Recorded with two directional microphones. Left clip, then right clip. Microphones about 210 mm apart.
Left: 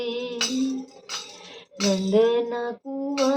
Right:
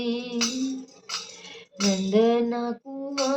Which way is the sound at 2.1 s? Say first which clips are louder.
Left 1 dB; 5° left (ahead or behind).